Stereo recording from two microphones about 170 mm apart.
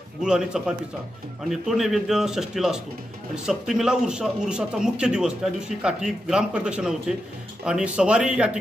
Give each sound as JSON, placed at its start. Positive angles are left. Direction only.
{"t": 0.2, "sound": "a man's voice", "side_deg": -5}